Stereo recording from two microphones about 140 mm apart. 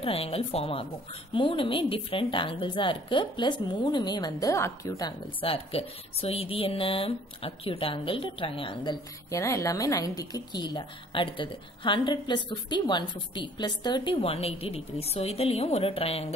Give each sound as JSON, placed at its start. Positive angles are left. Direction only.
{"t": 0.0, "sound": "speech", "side_deg": 45}
{"t": 5.4, "sound": "speech", "side_deg": 45}
{"t": 9.3, "sound": "speech", "side_deg": 20}